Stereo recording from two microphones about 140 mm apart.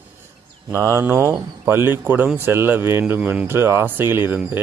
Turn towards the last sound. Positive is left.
turn(degrees=-15)  # may be behind; listen again after turning